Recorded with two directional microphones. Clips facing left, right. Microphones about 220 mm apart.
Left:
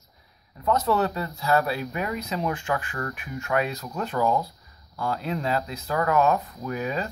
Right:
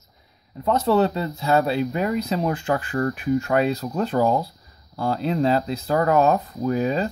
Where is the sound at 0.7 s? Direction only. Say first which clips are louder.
Right 4 dB; 30° right (ahead or behind).